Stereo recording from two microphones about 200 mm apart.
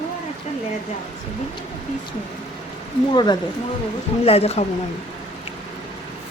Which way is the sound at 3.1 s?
20° left (ahead or behind).